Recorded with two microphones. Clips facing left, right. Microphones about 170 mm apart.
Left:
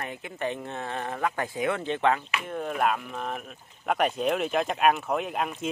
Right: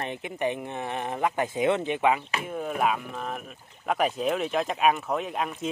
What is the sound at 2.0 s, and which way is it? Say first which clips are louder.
Speech: right 1 dB; 10° right (ahead or behind).